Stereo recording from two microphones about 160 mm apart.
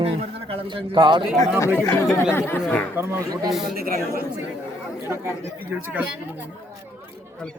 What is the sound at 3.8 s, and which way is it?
Speech, 70° right (ahead or behind).